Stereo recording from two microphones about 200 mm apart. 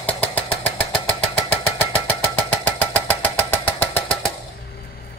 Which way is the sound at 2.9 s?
10° left (ahead or behind).